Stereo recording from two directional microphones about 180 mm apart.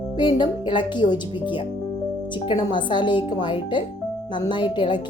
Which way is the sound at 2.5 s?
25° left (ahead or behind).